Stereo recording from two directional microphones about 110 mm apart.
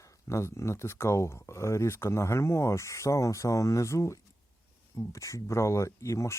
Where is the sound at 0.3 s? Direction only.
25° left (ahead or behind).